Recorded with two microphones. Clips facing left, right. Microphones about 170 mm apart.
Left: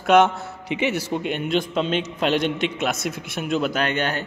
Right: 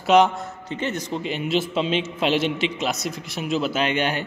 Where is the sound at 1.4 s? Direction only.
5° right (ahead or behind).